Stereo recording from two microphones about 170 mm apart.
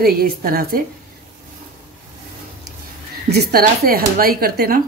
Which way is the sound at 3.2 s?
65° right (ahead or behind).